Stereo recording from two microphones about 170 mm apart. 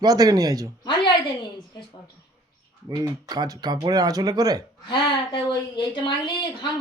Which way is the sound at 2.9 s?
25° right (ahead or behind).